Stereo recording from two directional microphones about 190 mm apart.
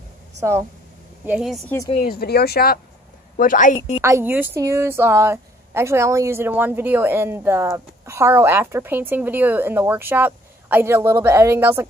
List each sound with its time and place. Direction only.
0.4 s speech: 15° right (ahead or behind)
2.0 s speech: 55° left (ahead or behind)
4.0 s speech: 15° right (ahead or behind)